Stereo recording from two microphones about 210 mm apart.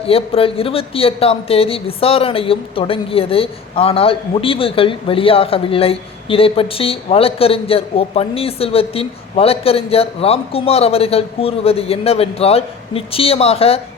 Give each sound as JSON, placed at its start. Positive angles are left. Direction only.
{"t": 0.0, "sound": "speech", "side_deg": 25}